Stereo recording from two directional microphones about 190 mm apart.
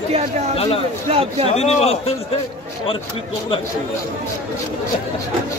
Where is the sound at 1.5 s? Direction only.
35° left (ahead or behind).